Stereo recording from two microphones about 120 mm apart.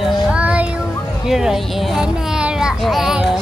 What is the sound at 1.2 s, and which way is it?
A child's voice, 5° right (ahead or behind).